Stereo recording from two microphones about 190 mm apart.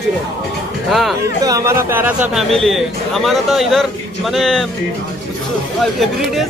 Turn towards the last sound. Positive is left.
turn(degrees=0)  # may be behind; listen again after turning